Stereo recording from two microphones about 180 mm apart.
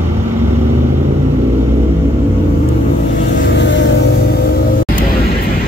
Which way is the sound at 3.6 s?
90° left.